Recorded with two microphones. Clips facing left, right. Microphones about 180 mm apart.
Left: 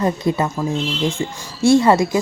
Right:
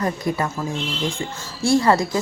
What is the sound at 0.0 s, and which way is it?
Speech, 25° left (ahead or behind).